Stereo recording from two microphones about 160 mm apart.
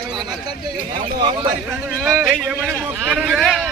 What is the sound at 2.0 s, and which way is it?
A man's voice, centre (ahead or behind).